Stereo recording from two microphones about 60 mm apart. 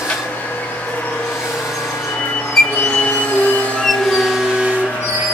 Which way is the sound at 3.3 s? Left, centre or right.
Left.